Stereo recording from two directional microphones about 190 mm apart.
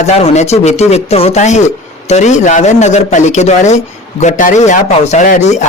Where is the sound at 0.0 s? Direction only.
35° left (ahead or behind).